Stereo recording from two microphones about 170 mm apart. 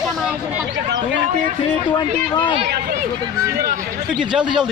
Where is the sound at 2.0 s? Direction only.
25° left (ahead or behind).